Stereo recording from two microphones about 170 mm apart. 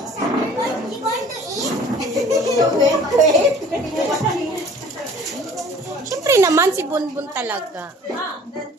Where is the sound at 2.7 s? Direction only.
20° right (ahead or behind).